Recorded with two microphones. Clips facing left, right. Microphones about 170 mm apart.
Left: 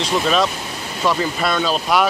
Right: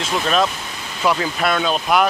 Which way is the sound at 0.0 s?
Centre (ahead or behind).